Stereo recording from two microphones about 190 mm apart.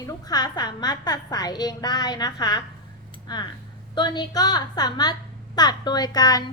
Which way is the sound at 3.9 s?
25° left (ahead or behind).